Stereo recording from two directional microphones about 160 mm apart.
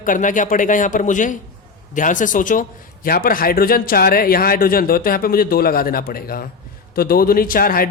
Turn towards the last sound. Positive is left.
turn(degrees=65)  # may be behind; listen again after turning